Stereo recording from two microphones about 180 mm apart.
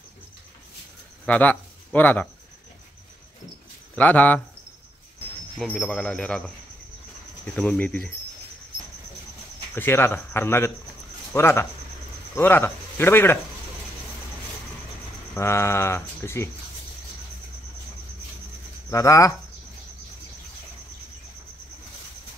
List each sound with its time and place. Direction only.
1.2 s speech: 10° left (ahead or behind)
3.9 s speech: 10° left (ahead or behind)
5.6 s speech: 5° left (ahead or behind)
7.5 s speech: 5° left (ahead or behind)
9.8 s speech: 15° left (ahead or behind)
15.3 s speech: 15° left (ahead or behind)
18.9 s speech: 15° left (ahead or behind)